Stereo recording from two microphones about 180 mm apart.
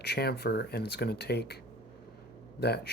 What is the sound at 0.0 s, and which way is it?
Speech, 60° left (ahead or behind).